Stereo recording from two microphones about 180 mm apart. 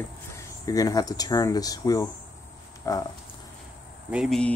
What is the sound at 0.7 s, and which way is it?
Speech, 20° left (ahead or behind).